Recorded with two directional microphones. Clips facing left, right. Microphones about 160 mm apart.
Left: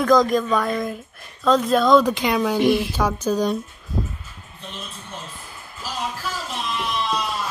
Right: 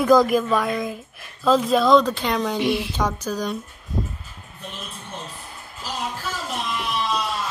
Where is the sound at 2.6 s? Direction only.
45° left (ahead or behind).